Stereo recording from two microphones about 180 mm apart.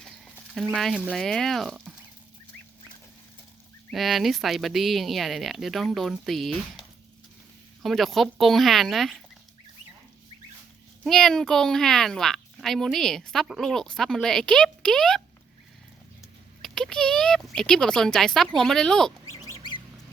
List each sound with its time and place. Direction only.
0.5 s speech: centre (ahead or behind)
3.9 s speech: centre (ahead or behind)
11.0 s speech: 5° left (ahead or behind)
16.6 s speech: 5° left (ahead or behind)
19.3 s bird: 20° left (ahead or behind)